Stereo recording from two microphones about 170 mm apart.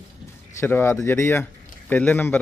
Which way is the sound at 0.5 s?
15° left (ahead or behind).